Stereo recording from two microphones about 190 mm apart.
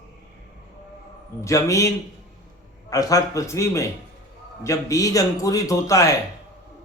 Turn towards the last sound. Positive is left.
turn(degrees=15)  # may be behind; listen again after turning